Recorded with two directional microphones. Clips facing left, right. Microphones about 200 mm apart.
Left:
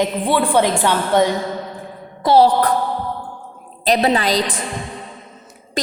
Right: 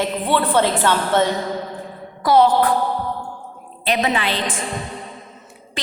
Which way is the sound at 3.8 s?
35° left (ahead or behind).